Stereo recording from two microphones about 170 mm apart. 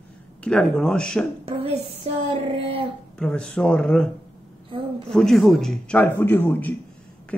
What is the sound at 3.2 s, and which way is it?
Speech, 5° left (ahead or behind).